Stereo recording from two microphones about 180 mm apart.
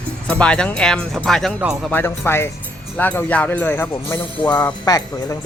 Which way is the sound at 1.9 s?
10° left (ahead or behind).